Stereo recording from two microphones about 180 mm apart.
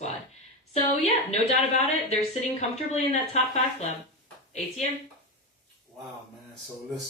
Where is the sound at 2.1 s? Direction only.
35° left (ahead or behind).